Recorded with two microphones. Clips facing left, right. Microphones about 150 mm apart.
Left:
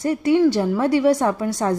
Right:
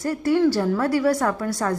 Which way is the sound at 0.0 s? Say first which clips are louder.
Left 3 dB; 20° left (ahead or behind).